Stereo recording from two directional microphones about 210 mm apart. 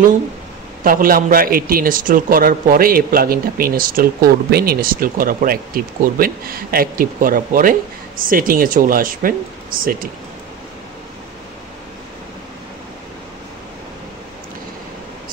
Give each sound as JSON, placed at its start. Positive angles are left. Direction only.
{"t": 0.8, "sound": "a man's voice", "side_deg": -40}